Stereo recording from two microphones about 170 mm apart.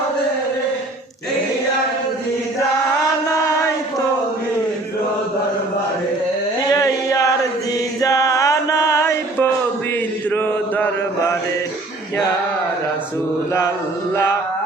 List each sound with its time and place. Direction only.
6.7 s a sound: 20° left (ahead or behind)
8.0 s music: 20° left (ahead or behind)
10.2 s mantra: 10° left (ahead or behind)